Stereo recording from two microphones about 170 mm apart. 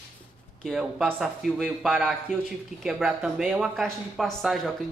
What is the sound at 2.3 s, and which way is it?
Speech, 45° left (ahead or behind).